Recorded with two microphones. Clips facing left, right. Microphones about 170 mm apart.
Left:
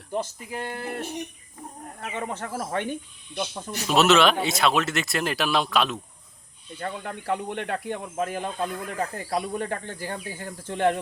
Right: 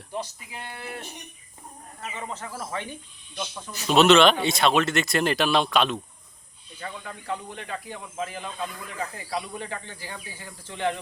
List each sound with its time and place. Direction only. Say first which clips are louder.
0.1 s speech: left 5 dB; 45° left (ahead or behind)
2.0 s speech: left 4 dB; 60° left (ahead or behind)
3.8 s speech: right 2 dB; 5° left (ahead or behind)
6.7 s speech: left 5 dB; 55° left (ahead or behind)